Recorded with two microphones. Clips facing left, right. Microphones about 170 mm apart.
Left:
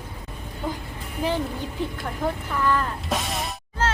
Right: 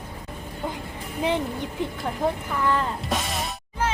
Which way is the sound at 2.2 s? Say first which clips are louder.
Even; 20° right (ahead or behind).